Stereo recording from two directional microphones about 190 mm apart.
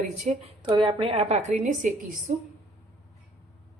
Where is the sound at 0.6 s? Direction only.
25° right (ahead or behind); by 2.3 s 45° right (ahead or behind).